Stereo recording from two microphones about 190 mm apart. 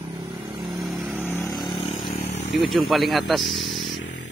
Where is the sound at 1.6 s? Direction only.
25° left (ahead or behind).